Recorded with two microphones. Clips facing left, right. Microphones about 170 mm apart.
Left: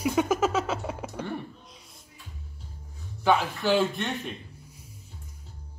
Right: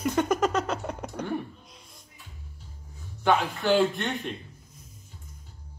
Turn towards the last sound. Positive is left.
turn(degrees=0)  # may be behind; listen again after turning